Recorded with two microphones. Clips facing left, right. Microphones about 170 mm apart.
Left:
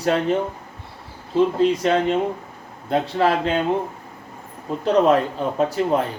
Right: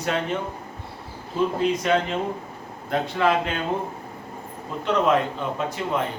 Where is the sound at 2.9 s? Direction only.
35° left (ahead or behind).